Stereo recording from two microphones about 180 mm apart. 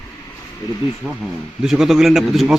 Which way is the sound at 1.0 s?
5° right (ahead or behind).